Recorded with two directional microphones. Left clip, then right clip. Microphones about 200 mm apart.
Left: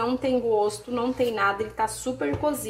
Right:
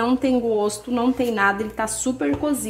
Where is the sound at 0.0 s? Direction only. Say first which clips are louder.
Right 4 dB; 35° right (ahead or behind).